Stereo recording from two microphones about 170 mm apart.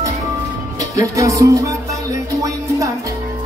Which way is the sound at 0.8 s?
20° right (ahead or behind).